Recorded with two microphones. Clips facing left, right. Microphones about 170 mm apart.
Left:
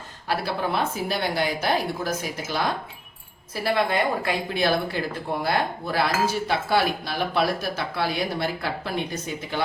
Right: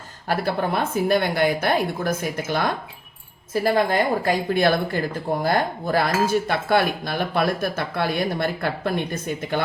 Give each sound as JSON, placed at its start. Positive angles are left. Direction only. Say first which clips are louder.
{"t": 0.3, "sound": "speech", "louder": "right 3 dB", "side_deg": -50}